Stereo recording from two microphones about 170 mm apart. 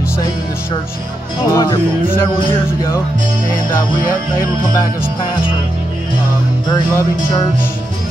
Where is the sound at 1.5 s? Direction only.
20° left (ahead or behind).